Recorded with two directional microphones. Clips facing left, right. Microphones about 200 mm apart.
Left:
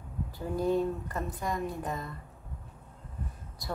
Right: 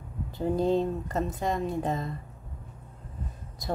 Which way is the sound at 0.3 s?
25° right (ahead or behind).